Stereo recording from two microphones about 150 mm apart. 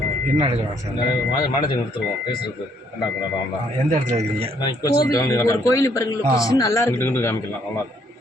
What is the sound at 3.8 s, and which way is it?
Speech, 50° right (ahead or behind).